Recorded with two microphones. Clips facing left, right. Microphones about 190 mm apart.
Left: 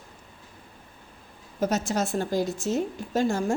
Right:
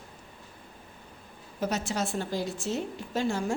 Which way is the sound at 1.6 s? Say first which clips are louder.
Left 4 dB; 45° left (ahead or behind).